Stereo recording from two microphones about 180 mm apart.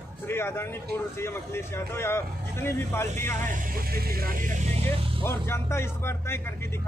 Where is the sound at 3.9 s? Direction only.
55° right (ahead or behind).